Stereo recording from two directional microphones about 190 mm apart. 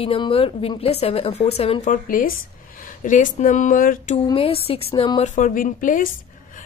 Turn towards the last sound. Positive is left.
turn(degrees=45)  # may be behind; listen again after turning